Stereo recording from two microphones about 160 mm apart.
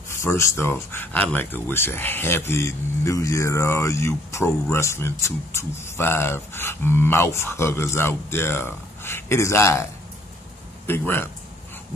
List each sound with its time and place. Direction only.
0.1 s speech: 15° left (ahead or behind)
10.9 s speech: 15° left (ahead or behind)